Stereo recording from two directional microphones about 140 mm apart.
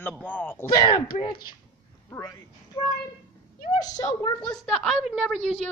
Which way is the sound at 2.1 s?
25° left (ahead or behind).